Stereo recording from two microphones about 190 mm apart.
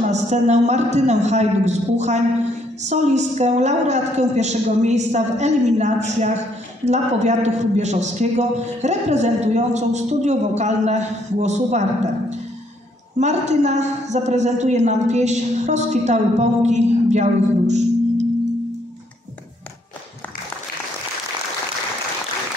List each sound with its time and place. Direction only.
0.0 s a man's voice: 35° right (ahead or behind)
13.2 s a man's voice: 35° right (ahead or behind)